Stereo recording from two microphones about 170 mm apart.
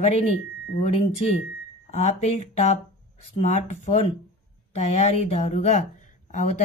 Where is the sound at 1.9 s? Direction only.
40° left (ahead or behind).